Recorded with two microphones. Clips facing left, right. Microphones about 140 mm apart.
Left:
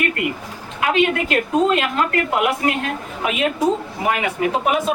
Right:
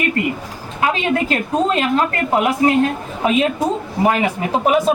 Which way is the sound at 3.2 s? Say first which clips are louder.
Right 2 dB; 30° right (ahead or behind).